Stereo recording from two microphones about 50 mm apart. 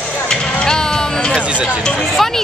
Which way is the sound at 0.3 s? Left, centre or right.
Centre.